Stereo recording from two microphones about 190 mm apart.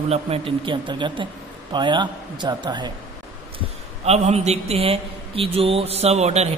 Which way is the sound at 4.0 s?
35° right (ahead or behind).